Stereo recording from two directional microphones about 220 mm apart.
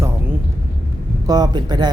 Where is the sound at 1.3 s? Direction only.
20° right (ahead or behind).